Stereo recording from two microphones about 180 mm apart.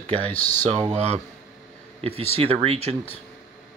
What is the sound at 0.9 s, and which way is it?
Speech, 35° right (ahead or behind).